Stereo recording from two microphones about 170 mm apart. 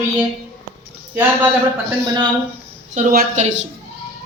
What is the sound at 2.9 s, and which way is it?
Speech, 50° right (ahead or behind).